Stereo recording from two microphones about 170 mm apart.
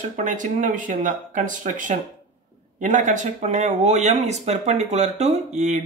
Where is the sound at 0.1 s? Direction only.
50° right (ahead or behind).